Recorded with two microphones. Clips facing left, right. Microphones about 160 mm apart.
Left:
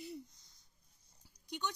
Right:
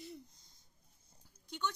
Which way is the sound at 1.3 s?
15° left (ahead or behind).